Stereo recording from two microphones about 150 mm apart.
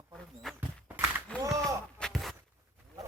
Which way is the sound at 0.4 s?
Centre (ahead or behind).